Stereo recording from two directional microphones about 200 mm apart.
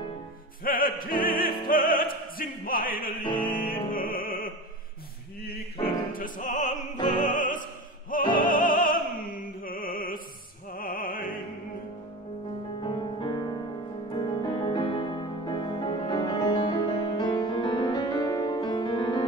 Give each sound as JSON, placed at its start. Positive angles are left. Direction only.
{"t": 0.7, "sound": "music", "side_deg": 45}
{"t": 1.4, "sound": "opera", "side_deg": 45}
{"t": 3.3, "sound": "music", "side_deg": 25}
{"t": 3.6, "sound": "music", "side_deg": 45}
{"t": 5.4, "sound": "opera", "side_deg": 50}
{"t": 12.8, "sound": "music", "side_deg": 25}